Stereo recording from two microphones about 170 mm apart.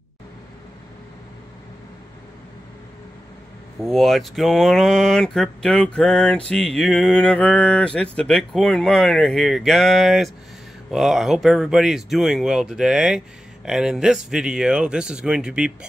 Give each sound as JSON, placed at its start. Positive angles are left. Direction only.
{"t": 3.8, "sound": "speech", "side_deg": 0}